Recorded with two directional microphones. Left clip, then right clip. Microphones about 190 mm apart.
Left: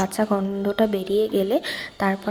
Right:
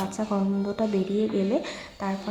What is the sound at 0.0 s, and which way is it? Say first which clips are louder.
A woman's voice: left 6 dB; 35° left (ahead or behind).